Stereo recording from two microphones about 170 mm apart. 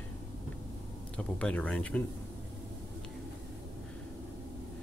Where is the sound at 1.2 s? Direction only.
5° left (ahead or behind).